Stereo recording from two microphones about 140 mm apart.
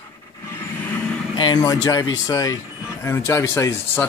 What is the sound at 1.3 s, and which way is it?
Speech, 30° left (ahead or behind).